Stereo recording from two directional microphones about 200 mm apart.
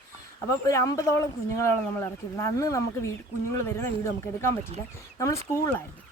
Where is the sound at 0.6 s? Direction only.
15° left (ahead or behind).